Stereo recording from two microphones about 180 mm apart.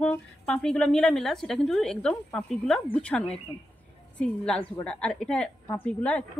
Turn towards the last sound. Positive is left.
turn(degrees=5)  # may be behind; listen again after turning